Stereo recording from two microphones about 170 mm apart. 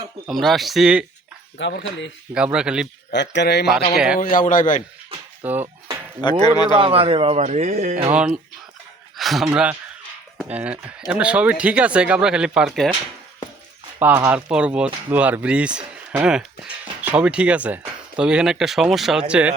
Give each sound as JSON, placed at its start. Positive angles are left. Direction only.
{"t": 0.3, "sound": "speech", "side_deg": 0}
{"t": 1.5, "sound": "speech", "side_deg": 90}
{"t": 2.3, "sound": "speech", "side_deg": -5}
{"t": 3.1, "sound": "speech", "side_deg": 90}
{"t": 4.2, "sound": "speech", "side_deg": 55}
{"t": 5.4, "sound": "a sound", "side_deg": -10}
{"t": 6.4, "sound": "a man's voice", "side_deg": 25}
{"t": 6.7, "sound": "speech", "side_deg": -35}
{"t": 8.1, "sound": "speech", "side_deg": -5}
{"t": 10.5, "sound": "speech", "side_deg": -10}
{"t": 14.0, "sound": "speech", "side_deg": -10}